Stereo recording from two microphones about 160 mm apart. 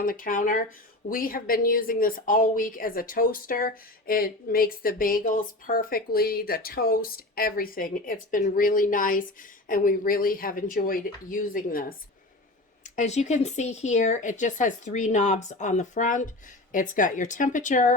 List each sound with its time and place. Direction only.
0.0 s speech: 60° left (ahead or behind)
12.8 s speech: 45° left (ahead or behind)